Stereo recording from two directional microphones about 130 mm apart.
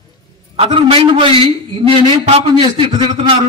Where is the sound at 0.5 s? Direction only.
45° right (ahead or behind).